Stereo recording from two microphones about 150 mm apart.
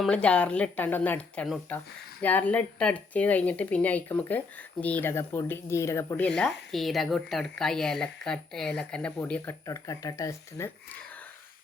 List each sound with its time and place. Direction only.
0.0 s speech: 5° left (ahead or behind)
6.2 s speech: 5° left (ahead or behind)
9.6 s speech: 25° left (ahead or behind)